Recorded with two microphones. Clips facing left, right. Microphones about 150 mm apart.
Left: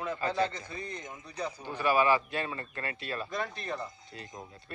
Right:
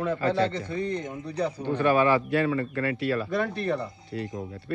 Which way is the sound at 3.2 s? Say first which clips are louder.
Right 9 dB; 65° right (ahead or behind).